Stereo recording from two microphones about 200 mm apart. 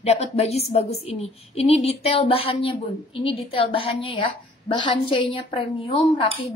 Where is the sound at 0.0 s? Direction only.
35° left (ahead or behind).